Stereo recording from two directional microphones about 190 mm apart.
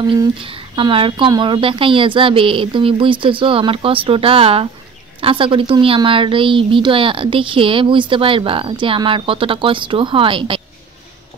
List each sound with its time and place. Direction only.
0.1 s a woman's voice: 25° right (ahead or behind)